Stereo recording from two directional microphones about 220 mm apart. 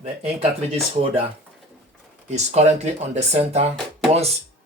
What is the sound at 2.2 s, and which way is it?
Speech, 30° right (ahead or behind).